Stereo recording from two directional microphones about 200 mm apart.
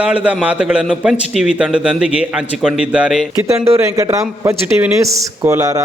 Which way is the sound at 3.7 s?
15° right (ahead or behind).